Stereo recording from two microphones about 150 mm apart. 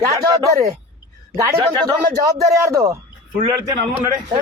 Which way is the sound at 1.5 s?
20° right (ahead or behind).